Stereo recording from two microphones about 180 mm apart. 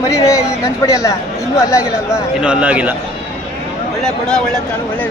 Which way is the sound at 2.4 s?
5° right (ahead or behind).